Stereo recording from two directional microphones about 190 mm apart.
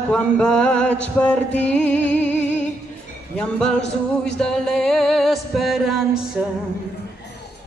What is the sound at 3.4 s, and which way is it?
Music, 5° left (ahead or behind).